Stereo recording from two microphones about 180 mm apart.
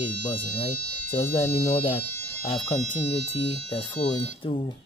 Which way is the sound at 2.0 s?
10° left (ahead or behind).